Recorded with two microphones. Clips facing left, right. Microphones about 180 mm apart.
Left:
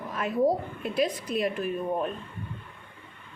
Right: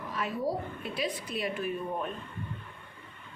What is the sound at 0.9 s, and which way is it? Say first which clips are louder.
Speech: left 8 dB; 45° left (ahead or behind).